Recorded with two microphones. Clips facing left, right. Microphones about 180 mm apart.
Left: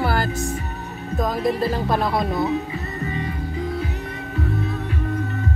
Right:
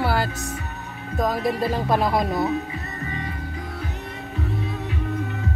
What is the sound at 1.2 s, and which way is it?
Speech, 15° right (ahead or behind).